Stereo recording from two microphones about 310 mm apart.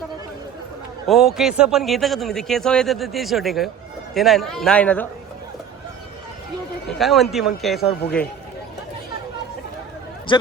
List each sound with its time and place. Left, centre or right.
1.0 s a man's voice: centre
7.0 s a man's voice: centre
10.3 s a man's voice: centre